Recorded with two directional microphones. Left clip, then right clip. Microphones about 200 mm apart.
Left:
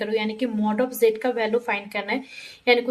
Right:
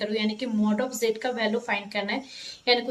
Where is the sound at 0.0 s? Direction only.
50° left (ahead or behind).